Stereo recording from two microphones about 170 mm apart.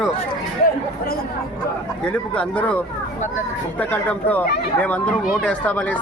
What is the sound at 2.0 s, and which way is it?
Speech, 5° left (ahead or behind).